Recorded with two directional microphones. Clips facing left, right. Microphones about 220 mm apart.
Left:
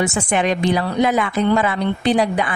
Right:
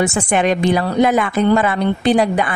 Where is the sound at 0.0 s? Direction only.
50° right (ahead or behind).